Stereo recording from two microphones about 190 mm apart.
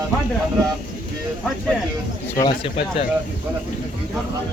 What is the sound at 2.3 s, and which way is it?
Speech, 20° left (ahead or behind).